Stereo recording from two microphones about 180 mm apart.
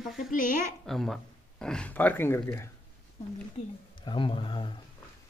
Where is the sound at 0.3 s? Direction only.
50° left (ahead or behind).